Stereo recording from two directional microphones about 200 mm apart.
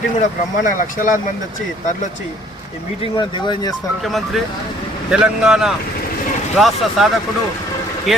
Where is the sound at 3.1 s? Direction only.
20° left (ahead or behind).